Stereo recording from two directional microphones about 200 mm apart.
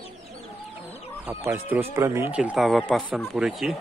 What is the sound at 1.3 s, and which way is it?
Speech, 10° right (ahead or behind).